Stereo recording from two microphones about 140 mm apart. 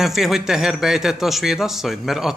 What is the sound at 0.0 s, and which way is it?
A man's voice, centre (ahead or behind).